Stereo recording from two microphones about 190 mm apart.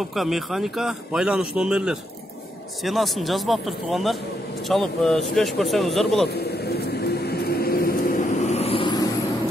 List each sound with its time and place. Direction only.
0.1 s a man's voice: centre (ahead or behind)
6.3 s a sound: 60° left (ahead or behind)
8.4 s vehicle: 35° left (ahead or behind)